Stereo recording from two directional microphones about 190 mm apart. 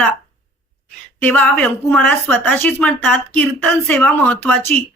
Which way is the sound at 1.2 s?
10° left (ahead or behind).